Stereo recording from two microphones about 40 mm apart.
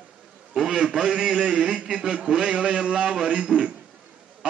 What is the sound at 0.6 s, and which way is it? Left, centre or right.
A man's voice, centre.